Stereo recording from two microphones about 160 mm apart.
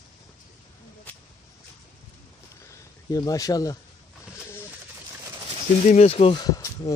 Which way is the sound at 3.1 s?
20° left (ahead or behind).